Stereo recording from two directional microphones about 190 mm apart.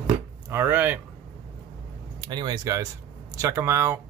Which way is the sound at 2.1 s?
20° right (ahead or behind).